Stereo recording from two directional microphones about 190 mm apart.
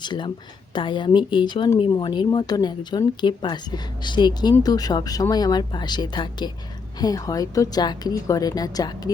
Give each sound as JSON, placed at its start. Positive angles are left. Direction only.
{"t": 0.0, "sound": "speech", "side_deg": 25}